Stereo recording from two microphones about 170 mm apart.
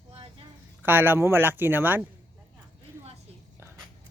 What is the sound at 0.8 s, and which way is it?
Speech, 10° right (ahead or behind).